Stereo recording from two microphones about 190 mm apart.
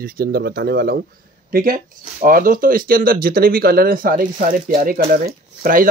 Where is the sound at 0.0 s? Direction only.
55° right (ahead or behind).